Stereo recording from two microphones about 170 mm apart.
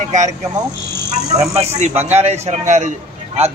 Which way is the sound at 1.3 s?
40° right (ahead or behind).